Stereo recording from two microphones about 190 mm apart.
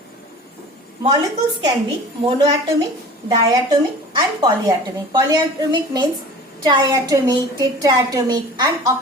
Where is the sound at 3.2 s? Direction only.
20° right (ahead or behind).